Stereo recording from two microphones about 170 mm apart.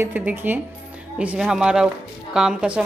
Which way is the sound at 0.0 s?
10° right (ahead or behind).